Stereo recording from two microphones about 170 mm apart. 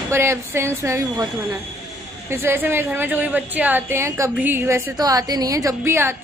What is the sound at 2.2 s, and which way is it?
A woman's voice, 15° right (ahead or behind).